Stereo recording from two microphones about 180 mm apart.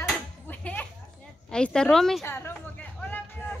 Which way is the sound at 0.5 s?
10° left (ahead or behind).